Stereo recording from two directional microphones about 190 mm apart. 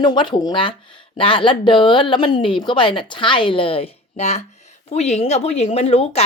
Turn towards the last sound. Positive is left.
turn(degrees=30)  # may be behind; listen again after turning